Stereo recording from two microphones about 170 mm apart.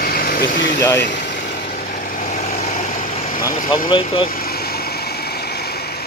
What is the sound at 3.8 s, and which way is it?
Speech, 30° left (ahead or behind).